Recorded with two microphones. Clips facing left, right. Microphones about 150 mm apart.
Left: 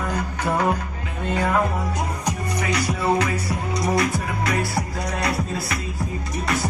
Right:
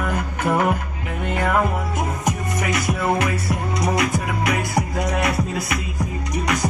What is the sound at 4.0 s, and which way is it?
Music, 15° right (ahead or behind).